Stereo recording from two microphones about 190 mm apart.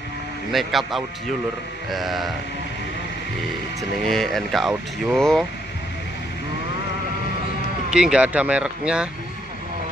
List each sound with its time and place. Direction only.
0.5 s speech: centre (ahead or behind)
4.0 s speech: centre (ahead or behind)
7.9 s speech: 5° right (ahead or behind)